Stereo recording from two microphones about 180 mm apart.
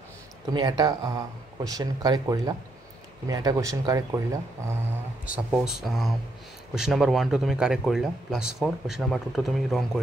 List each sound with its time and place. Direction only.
0.5 s speech: 20° right (ahead or behind)
5.3 s speech: 5° right (ahead or behind)